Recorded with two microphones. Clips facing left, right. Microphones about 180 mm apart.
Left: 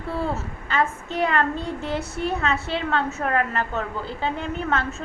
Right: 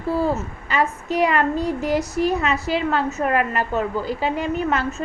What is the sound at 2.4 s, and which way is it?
A woman's voice, 5° right (ahead or behind).